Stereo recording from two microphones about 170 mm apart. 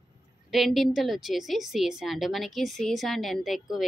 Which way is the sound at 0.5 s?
Centre (ahead or behind).